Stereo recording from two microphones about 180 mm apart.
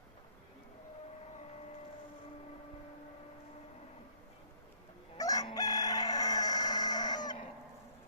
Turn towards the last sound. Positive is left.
turn(degrees=20)  # may be behind; listen again after turning